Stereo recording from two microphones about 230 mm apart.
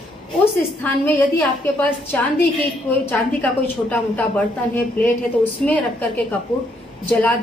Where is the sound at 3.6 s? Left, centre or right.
Centre.